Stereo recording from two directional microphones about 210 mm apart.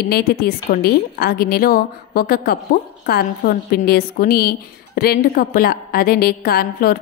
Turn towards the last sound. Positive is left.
turn(degrees=45)  # may be behind; listen again after turning